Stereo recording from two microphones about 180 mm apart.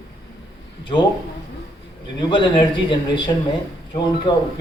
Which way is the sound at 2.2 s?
25° left (ahead or behind).